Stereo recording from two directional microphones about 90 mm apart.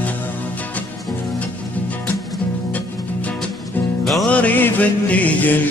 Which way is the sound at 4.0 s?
Centre (ahead or behind).